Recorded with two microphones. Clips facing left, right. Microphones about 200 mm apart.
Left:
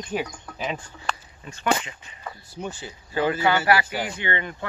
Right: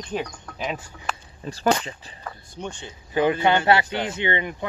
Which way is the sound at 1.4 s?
35° right (ahead or behind).